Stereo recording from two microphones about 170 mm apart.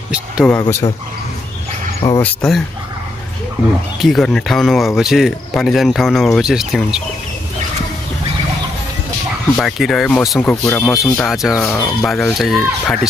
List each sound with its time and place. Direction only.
0.5 s speech: 15° left (ahead or behind)
2.0 s speech: 15° left (ahead or behind)
4.0 s speech: centre (ahead or behind)
9.6 s speech: centre (ahead or behind)
11.1 s speech: centre (ahead or behind)
11.6 s speech: 10° left (ahead or behind)